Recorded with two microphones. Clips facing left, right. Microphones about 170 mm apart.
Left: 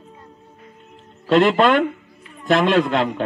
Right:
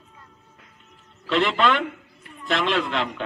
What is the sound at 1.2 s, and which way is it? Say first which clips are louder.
A man's voice: left 7 dB; 45° left (ahead or behind).